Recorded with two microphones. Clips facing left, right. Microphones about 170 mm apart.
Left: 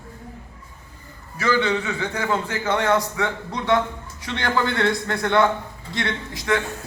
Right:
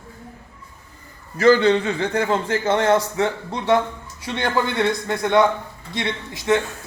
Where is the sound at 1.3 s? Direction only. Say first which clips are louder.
Right 7 dB; 35° right (ahead or behind).